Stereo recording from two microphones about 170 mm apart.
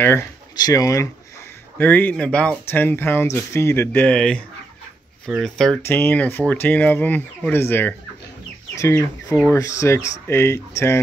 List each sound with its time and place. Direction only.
0.0 s speech: 15° left (ahead or behind)
5.8 s speech: 15° left (ahead or behind)